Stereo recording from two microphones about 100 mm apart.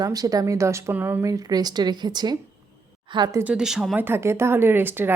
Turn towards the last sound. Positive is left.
turn(degrees=-20)  # may be behind; listen again after turning